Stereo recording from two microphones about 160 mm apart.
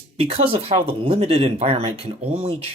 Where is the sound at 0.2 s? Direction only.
40° right (ahead or behind).